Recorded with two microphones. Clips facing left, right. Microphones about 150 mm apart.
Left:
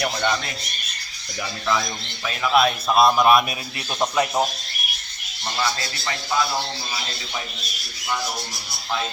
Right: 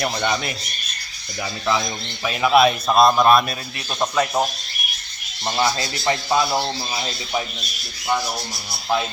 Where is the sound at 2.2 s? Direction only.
10° right (ahead or behind).